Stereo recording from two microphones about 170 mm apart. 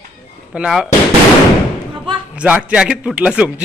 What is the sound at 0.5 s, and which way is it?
Speech, 5° right (ahead or behind).